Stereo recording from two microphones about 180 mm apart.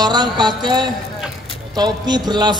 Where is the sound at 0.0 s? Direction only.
25° right (ahead or behind).